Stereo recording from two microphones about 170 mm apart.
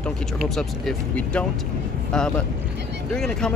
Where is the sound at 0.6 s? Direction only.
5° left (ahead or behind).